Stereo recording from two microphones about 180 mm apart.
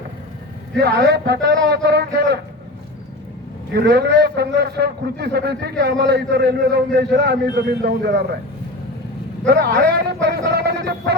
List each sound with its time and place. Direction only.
0.8 s a man's voice: 65° right (ahead or behind)
3.7 s a man's voice: 65° right (ahead or behind)
9.5 s a man's voice: 65° right (ahead or behind)